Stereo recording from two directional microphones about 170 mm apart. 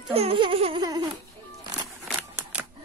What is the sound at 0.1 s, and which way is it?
Music, 35° right (ahead or behind).